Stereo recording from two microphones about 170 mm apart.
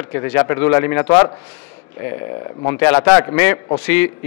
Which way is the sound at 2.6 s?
15° left (ahead or behind).